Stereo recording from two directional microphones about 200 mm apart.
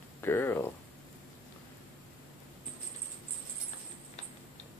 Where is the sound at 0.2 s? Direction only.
10° left (ahead or behind).